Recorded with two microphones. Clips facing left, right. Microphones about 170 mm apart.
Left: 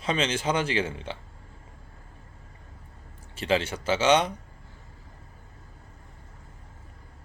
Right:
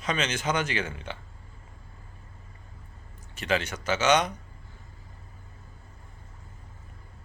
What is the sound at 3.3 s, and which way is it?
Speech, 30° left (ahead or behind).